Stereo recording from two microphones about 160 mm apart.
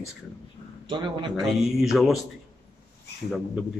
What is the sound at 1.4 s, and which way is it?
Speech, centre (ahead or behind).